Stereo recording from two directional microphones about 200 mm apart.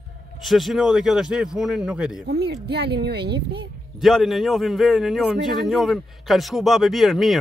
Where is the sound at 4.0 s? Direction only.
Centre (ahead or behind).